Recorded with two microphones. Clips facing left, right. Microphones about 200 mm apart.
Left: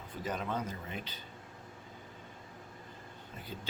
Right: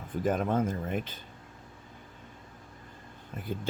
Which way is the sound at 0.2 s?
50° right (ahead or behind).